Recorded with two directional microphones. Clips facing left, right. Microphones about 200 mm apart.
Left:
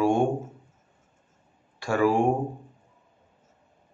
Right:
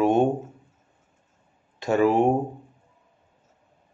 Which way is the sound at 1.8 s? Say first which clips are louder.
Right 3 dB; 20° right (ahead or behind).